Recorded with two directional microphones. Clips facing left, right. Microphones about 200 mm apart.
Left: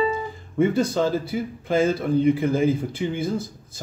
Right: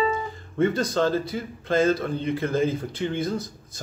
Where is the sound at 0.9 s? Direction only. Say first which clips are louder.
Left 1 dB; 10° left (ahead or behind).